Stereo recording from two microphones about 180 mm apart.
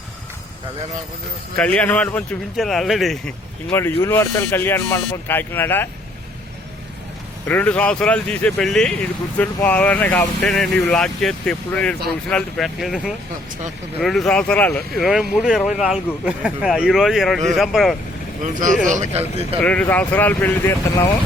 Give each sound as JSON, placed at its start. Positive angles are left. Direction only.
{"t": 1.5, "sound": "speech", "side_deg": 5}
{"t": 3.7, "sound": "speech", "side_deg": 10}
{"t": 7.4, "sound": "speech", "side_deg": 10}
{"t": 14.0, "sound": "speech", "side_deg": 0}
{"t": 18.4, "sound": "a man's voice", "side_deg": -45}
{"t": 19.6, "sound": "speech", "side_deg": 10}